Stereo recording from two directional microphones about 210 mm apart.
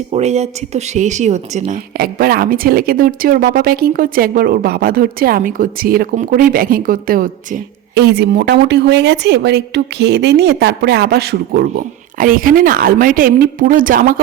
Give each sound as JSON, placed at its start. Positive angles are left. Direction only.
{"t": 0.1, "sound": "a woman's voice", "side_deg": -30}
{"t": 2.0, "sound": "a woman's voice", "side_deg": -45}